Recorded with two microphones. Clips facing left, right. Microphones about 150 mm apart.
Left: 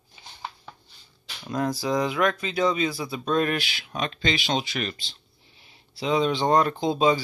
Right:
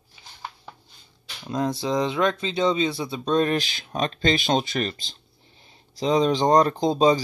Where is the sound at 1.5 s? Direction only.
25° right (ahead or behind); by 4.9 s 40° right (ahead or behind).